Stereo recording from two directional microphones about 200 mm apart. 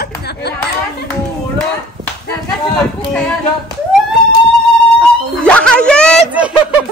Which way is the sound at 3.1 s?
5° left (ahead or behind).